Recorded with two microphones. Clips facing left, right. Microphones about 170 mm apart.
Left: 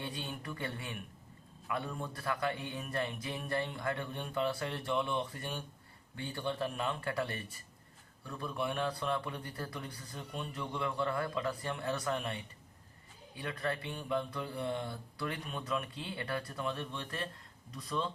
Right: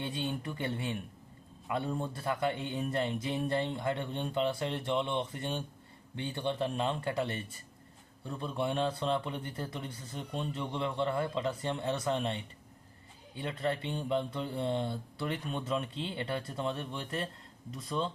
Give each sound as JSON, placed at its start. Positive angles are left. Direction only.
{"t": 0.0, "sound": "a man's voice", "side_deg": -25}